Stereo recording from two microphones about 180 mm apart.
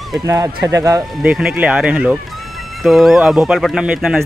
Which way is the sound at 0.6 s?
15° right (ahead or behind).